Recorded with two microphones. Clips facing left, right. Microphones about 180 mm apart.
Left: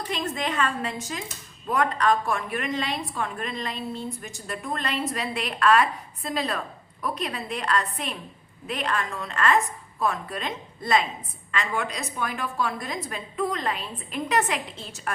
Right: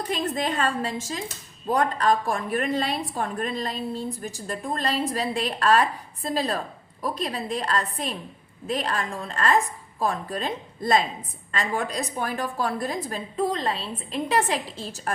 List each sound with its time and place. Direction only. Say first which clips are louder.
0.1 s a woman's voice: right 2 dB; 35° right (ahead or behind)